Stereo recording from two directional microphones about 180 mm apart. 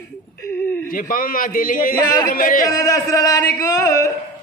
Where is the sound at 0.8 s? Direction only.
55° left (ahead or behind).